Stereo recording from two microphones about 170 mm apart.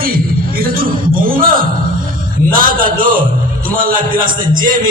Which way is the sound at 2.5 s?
55° right (ahead or behind).